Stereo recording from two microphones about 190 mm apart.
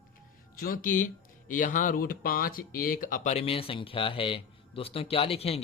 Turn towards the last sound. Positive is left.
turn(degrees=30)  # may be behind; listen again after turning